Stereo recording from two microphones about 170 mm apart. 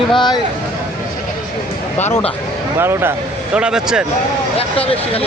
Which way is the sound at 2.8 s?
15° right (ahead or behind).